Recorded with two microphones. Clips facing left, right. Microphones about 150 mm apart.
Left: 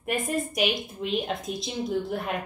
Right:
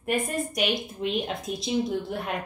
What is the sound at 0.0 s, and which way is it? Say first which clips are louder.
A woman's voice: right 1 dB; centre (ahead or behind).